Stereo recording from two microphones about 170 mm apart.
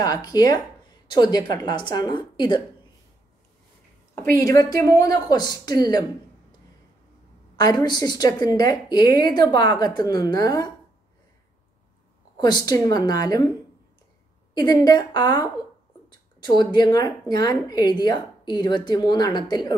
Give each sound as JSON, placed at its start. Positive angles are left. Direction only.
{"t": 0.0, "sound": "a woman's voice", "side_deg": 20}
{"t": 4.4, "sound": "a woman's voice", "side_deg": 20}
{"t": 7.5, "sound": "a woman's voice", "side_deg": 25}
{"t": 12.4, "sound": "a woman's voice", "side_deg": 25}
{"t": 14.5, "sound": "a woman's voice", "side_deg": 25}